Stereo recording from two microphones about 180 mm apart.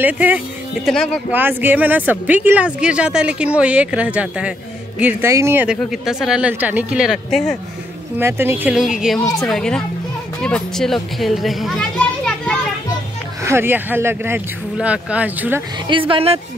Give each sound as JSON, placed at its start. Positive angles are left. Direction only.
{"t": 0.0, "sound": "a woman's voice", "side_deg": -10}
{"t": 0.8, "sound": "speech", "side_deg": 5}
{"t": 1.3, "sound": "a woman's voice", "side_deg": -10}
{"t": 8.2, "sound": "a woman's voice", "side_deg": -15}
{"t": 13.4, "sound": "a woman's voice", "side_deg": -15}
{"t": 15.9, "sound": "speech", "side_deg": -30}